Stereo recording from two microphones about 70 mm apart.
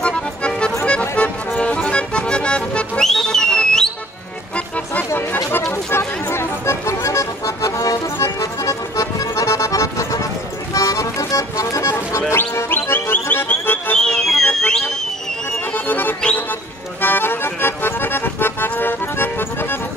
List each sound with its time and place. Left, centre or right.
0.0 s music: centre
5.7 s music: left
14.0 s music: centre
15.7 s music: left
17.0 s accordion: left